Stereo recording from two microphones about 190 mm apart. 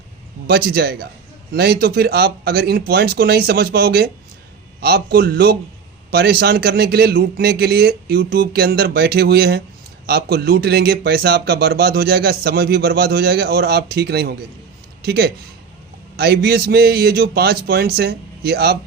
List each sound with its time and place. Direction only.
0.4 s a man's voice: 55° right (ahead or behind)